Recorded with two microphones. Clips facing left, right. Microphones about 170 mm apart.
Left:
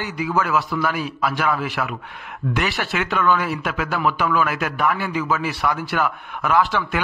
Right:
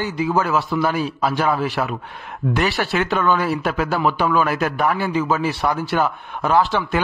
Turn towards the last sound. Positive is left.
turn(degrees=-30)  # may be behind; listen again after turning